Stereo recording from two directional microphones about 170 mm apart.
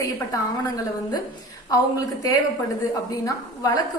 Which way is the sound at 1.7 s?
20° left (ahead or behind).